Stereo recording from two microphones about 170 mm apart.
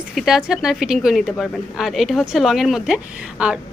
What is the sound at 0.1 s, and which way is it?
Speech, centre (ahead or behind).